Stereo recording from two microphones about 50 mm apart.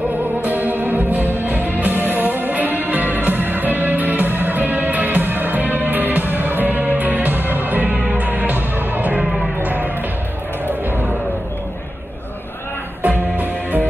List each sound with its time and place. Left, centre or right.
0.5 s music: right
10.7 s a sound: right
13.4 s music: right